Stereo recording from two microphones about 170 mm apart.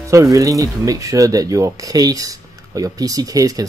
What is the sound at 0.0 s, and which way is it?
Speech, 20° right (ahead or behind).